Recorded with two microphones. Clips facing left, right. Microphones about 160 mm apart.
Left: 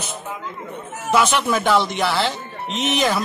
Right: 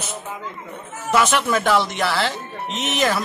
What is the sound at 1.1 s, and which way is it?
Speech, centre (ahead or behind).